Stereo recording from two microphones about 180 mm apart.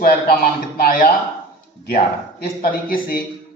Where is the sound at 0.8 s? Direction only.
50° left (ahead or behind).